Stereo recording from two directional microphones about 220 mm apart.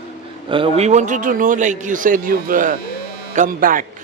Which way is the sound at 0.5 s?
25° right (ahead or behind).